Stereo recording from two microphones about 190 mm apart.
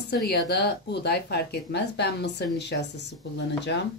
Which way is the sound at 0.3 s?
60° left (ahead or behind).